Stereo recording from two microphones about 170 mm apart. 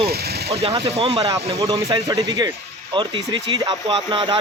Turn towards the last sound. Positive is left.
turn(degrees=-30)  # may be behind; listen again after turning